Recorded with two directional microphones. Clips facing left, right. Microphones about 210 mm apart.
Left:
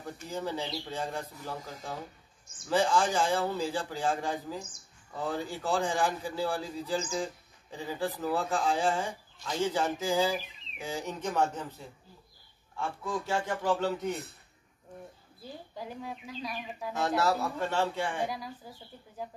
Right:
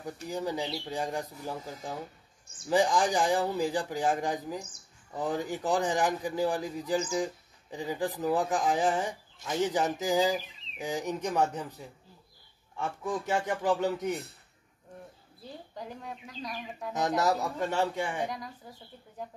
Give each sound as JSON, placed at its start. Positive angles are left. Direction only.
{"t": 0.0, "sound": "speech", "side_deg": -15}
{"t": 15.7, "sound": "speech", "side_deg": 5}
{"t": 16.9, "sound": "speech", "side_deg": -15}
{"t": 18.2, "sound": "speech", "side_deg": 5}